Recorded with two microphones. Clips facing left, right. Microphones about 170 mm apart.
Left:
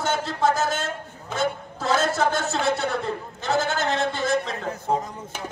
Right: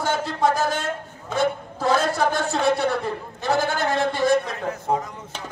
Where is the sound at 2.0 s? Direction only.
25° left (ahead or behind).